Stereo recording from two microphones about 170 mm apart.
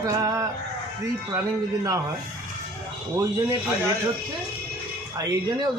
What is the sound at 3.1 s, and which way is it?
Speech, 15° right (ahead or behind).